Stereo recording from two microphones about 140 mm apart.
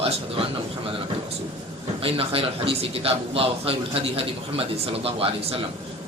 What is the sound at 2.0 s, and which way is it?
A man's voice, 45° right (ahead or behind).